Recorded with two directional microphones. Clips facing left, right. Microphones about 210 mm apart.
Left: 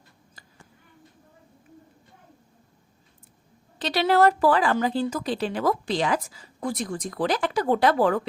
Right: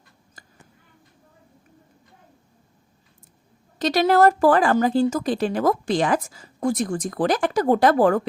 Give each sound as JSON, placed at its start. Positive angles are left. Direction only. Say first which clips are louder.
{"t": 3.8, "sound": "speech", "louder": "right 3 dB", "side_deg": -45}